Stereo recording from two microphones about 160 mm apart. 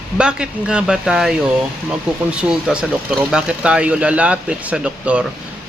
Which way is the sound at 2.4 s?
5° right (ahead or behind).